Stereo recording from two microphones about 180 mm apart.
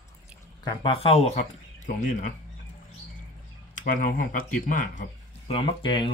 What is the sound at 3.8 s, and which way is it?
Speech, 45° left (ahead or behind).